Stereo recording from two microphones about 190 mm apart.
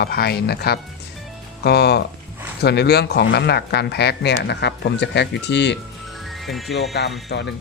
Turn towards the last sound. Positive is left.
turn(degrees=65)  # may be behind; listen again after turning